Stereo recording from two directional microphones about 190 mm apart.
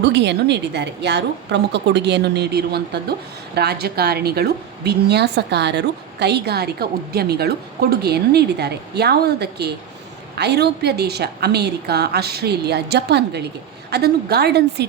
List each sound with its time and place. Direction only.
0.0 s a woman's voice: 65° right (ahead or behind)